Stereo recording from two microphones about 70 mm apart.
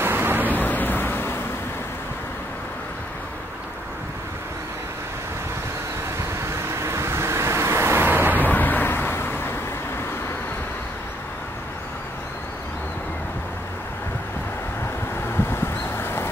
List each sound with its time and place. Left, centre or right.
0.0 s vehicle: right
0.5 s vehicle: left
6.8 s vehicle: right
8.4 s vehicle: left
15.3 s a sound: left